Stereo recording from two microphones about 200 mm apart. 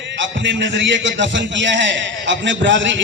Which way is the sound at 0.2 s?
65° right (ahead or behind).